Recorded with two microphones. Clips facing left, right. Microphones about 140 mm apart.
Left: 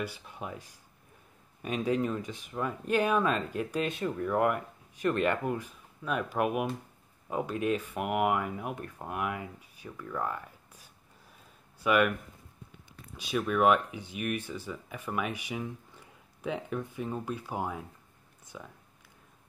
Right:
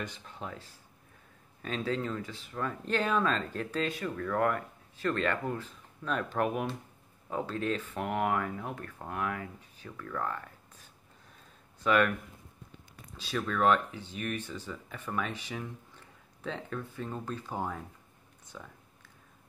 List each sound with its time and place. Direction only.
0.0 s speech: 10° left (ahead or behind)
13.1 s speech: 15° left (ahead or behind)